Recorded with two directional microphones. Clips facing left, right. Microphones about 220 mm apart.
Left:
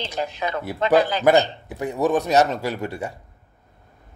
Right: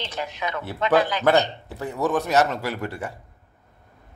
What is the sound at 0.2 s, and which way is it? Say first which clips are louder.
Speech: left 4 dB; 35° left (ahead or behind).